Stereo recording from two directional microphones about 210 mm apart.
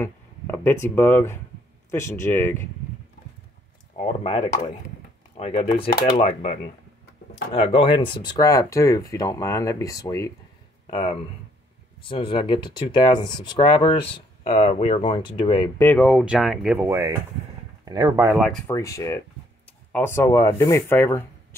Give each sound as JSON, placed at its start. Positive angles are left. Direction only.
{"t": 0.0, "sound": "speech", "side_deg": 10}
{"t": 3.9, "sound": "speech", "side_deg": 30}
{"t": 15.8, "sound": "speech", "side_deg": 5}
{"t": 18.5, "sound": "speech", "side_deg": 10}